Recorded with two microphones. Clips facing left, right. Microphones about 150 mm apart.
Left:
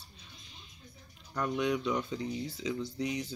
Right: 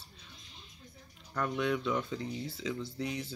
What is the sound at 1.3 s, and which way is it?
Speech, 15° left (ahead or behind).